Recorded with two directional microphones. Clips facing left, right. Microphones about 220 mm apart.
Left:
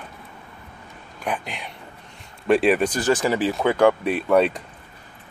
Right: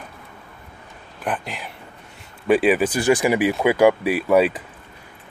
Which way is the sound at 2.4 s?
Centre (ahead or behind).